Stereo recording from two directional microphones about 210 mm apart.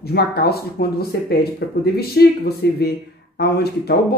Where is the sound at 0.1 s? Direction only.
50° left (ahead or behind).